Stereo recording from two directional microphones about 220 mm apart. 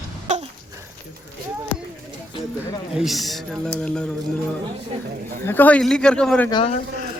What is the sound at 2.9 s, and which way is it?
Speech, centre (ahead or behind).